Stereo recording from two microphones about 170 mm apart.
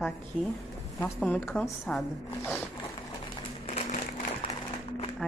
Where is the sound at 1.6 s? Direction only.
Centre (ahead or behind).